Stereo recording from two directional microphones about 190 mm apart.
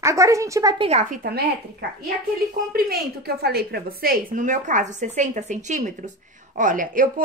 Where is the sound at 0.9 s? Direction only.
40° right (ahead or behind).